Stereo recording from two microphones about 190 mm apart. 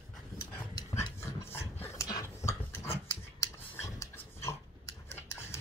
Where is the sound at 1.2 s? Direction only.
15° left (ahead or behind).